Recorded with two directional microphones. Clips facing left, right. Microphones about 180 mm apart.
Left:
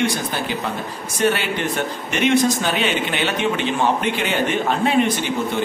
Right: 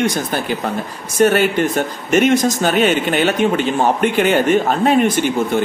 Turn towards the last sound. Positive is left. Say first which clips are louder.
# right 4 dB
turn(degrees=-45)  # may be behind; listen again after turning